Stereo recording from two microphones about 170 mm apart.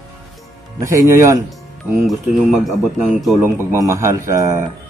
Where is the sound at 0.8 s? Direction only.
20° right (ahead or behind).